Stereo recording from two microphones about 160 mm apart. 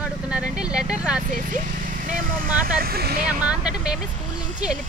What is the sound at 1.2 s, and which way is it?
Speech, 55° right (ahead or behind).